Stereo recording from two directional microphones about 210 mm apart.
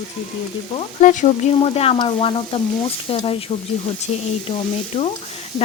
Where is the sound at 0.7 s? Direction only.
35° left (ahead or behind).